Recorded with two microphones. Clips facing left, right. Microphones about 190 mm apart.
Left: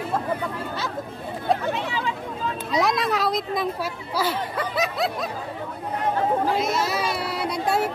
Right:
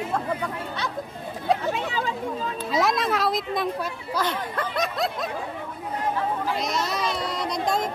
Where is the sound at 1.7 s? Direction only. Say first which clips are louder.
Even; 40° right (ahead or behind).